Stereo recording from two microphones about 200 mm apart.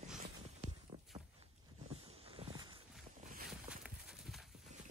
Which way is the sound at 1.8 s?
30° right (ahead or behind).